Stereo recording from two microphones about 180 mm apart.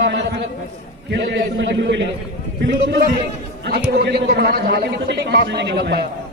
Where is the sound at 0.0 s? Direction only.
70° right (ahead or behind).